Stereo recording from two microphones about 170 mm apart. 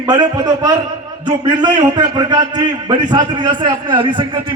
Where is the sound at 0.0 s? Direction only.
25° right (ahead or behind).